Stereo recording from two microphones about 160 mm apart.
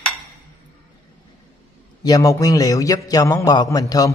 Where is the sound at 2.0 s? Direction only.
20° left (ahead or behind).